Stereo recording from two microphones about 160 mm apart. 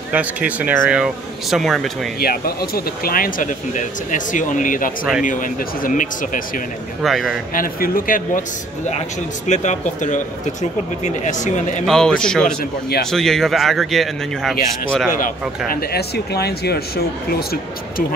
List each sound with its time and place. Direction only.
0.1 s speech: 10° right (ahead or behind)
2.1 s speech: 70° left (ahead or behind)
7.0 s speech: centre (ahead or behind)
7.5 s speech: 60° left (ahead or behind)
9.5 s speech: 50° left (ahead or behind)
11.8 s speech: 5° left (ahead or behind)
15.7 s speech: 80° left